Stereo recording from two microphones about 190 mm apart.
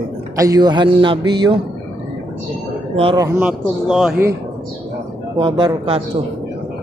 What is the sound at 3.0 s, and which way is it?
Speech, 30° right (ahead or behind).